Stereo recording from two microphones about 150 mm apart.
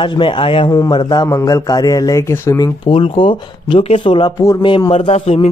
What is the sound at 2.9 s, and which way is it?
A man's voice, 35° left (ahead or behind).